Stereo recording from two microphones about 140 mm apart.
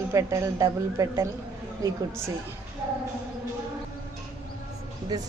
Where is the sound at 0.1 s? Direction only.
20° right (ahead or behind).